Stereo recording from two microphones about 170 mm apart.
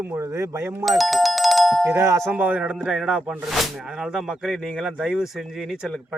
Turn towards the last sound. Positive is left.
turn(degrees=0)  # may be behind; listen again after turning